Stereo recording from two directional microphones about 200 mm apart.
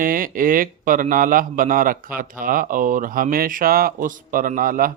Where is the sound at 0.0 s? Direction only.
45° right (ahead or behind).